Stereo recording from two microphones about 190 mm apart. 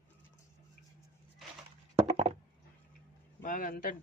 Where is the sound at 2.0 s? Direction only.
35° right (ahead or behind).